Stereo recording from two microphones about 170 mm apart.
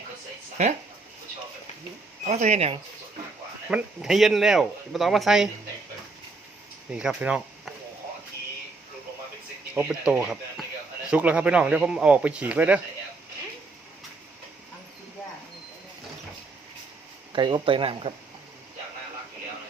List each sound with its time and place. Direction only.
0.6 s speech: 40° right (ahead or behind)
2.2 s speech: 45° right (ahead or behind)
3.7 s speech: 5° right (ahead or behind)
6.9 s speech: 5° right (ahead or behind)
9.7 s speech: 5° right (ahead or behind)
17.3 s speech: 25° right (ahead or behind)